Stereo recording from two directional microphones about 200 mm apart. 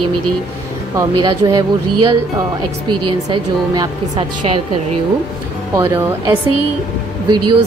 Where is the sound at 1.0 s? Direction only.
20° right (ahead or behind).